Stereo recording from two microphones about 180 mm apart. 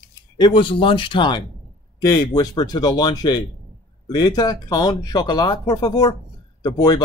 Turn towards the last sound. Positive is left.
turn(degrees=20)  # may be behind; listen again after turning